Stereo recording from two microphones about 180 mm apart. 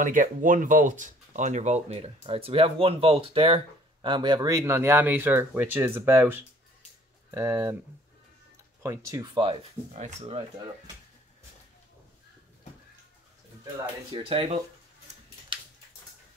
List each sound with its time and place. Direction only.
0.0 s speech: 45° right (ahead or behind); by 7.7 s 15° right (ahead or behind)
8.8 s speech: 20° right (ahead or behind)
9.9 s speech: 40° right (ahead or behind)
13.7 s speech: 25° right (ahead or behind)